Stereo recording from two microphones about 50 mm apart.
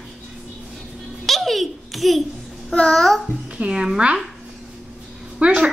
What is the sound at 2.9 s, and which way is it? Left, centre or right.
Speech, centre.